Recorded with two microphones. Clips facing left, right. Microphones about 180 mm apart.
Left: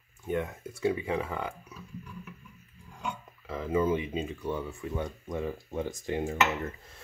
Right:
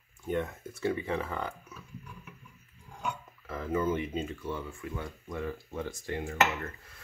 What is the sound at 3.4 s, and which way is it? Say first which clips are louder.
Speech: left 3 dB; 10° left (ahead or behind).